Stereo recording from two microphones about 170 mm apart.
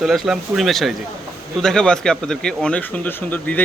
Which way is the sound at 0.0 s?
Centre (ahead or behind).